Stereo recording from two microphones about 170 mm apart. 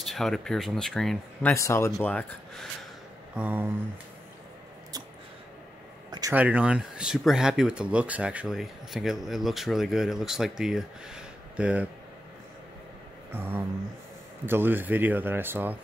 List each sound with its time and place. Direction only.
0.0 s speech: centre (ahead or behind)
1.5 s speech: 15° left (ahead or behind)
3.3 s speech: 10° right (ahead or behind)
6.3 s speech: 10° right (ahead or behind)
13.3 s speech: 10° right (ahead or behind)